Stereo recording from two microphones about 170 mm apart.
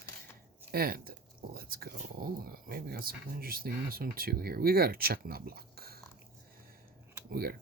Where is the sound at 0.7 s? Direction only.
65° right (ahead or behind).